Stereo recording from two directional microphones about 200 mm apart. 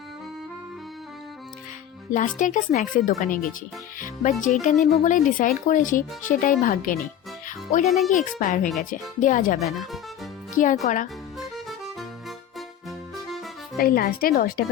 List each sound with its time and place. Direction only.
2.1 s speech: 40° left (ahead or behind)
7.4 s music: 35° left (ahead or behind)
7.9 s speech: centre (ahead or behind)
8.1 s speech: 40° left (ahead or behind)
13.7 s speech: 50° left (ahead or behind)